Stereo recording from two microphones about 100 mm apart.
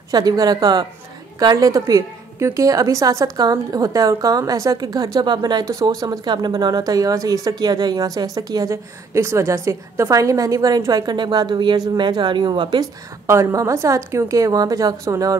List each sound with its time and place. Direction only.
0.1 s a woman's voice: 40° right (ahead or behind)
13.3 s a woman's voice: 30° right (ahead or behind)